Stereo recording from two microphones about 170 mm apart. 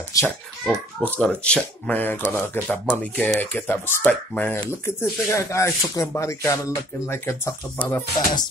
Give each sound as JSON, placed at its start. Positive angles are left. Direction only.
{"t": 0.1, "sound": "a child's voice", "side_deg": 20}
{"t": 0.7, "sound": "a child's voice", "side_deg": 5}